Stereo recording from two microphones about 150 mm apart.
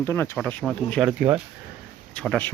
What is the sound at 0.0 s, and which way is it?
Speech, 20° left (ahead or behind).